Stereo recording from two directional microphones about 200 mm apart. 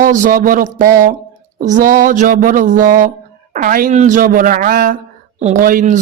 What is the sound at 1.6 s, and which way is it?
Speech, 40° right (ahead or behind).